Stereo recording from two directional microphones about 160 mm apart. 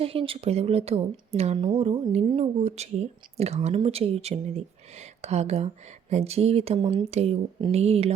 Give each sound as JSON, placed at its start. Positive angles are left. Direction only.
{"t": 0.0, "sound": "speech", "side_deg": -35}